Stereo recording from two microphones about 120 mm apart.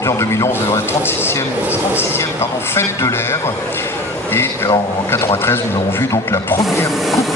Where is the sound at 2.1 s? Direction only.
20° left (ahead or behind).